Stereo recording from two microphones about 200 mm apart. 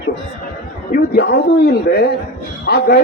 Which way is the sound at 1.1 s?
55° left (ahead or behind).